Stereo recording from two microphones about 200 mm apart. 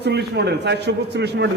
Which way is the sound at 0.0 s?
55° right (ahead or behind).